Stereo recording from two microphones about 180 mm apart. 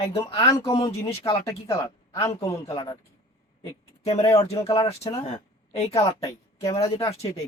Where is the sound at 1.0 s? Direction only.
30° left (ahead or behind).